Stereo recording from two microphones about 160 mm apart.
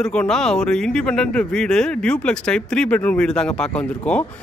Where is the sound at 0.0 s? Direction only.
5° left (ahead or behind).